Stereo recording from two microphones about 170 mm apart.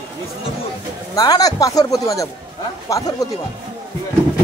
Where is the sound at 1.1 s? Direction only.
20° left (ahead or behind).